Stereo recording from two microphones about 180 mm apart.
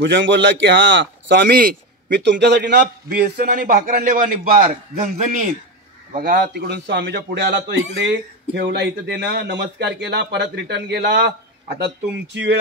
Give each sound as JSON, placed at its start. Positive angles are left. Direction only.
{"t": 0.0, "sound": "speech", "side_deg": -90}
{"t": 6.1, "sound": "speech", "side_deg": -55}
{"t": 7.9, "sound": "speech", "side_deg": -80}